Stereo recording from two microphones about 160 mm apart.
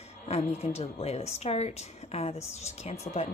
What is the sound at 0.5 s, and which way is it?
Speech, 40° left (ahead or behind).